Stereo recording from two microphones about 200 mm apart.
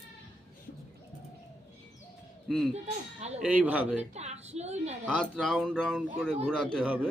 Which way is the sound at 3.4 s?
10° right (ahead or behind).